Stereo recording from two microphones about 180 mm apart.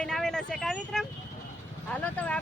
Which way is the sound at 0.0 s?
5° left (ahead or behind).